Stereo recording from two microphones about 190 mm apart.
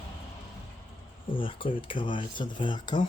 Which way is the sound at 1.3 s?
25° left (ahead or behind).